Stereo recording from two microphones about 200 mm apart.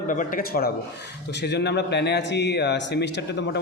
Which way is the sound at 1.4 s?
55° left (ahead or behind).